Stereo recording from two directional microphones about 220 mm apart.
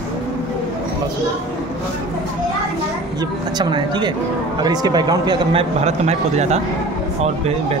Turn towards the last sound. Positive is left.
turn(degrees=-30)  # may be behind; listen again after turning